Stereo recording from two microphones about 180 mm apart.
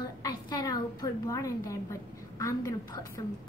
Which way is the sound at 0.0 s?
20° left (ahead or behind).